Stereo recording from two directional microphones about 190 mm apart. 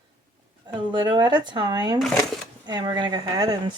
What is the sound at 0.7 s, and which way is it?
Speech, 25° right (ahead or behind).